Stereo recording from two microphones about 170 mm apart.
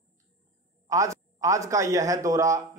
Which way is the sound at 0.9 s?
20° right (ahead or behind).